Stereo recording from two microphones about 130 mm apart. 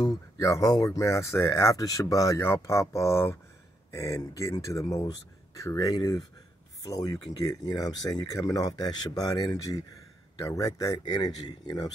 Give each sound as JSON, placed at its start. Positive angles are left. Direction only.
{"t": 0.4, "sound": "speech", "side_deg": 25}